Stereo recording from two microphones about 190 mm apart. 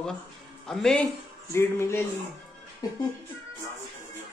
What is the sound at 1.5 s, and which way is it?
Music, 15° left (ahead or behind).